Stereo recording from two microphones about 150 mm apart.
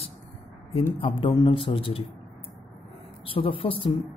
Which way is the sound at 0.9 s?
35° left (ahead or behind).